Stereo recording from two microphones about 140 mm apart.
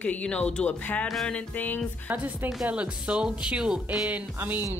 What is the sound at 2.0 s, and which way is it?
A woman's voice, 10° right (ahead or behind).